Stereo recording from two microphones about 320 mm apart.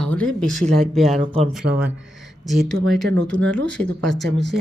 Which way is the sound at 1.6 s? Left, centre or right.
Right.